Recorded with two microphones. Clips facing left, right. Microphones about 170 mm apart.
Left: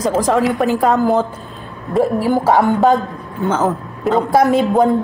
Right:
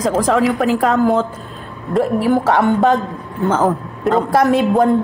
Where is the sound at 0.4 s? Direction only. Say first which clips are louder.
Even; centre (ahead or behind).